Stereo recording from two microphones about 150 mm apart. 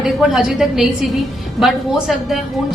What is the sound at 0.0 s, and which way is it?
A woman's voice, centre (ahead or behind).